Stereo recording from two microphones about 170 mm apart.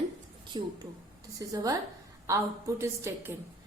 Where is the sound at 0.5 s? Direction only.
25° right (ahead or behind).